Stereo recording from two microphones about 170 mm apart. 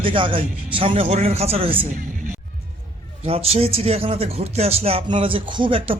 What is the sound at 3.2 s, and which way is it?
Speech, 35° right (ahead or behind).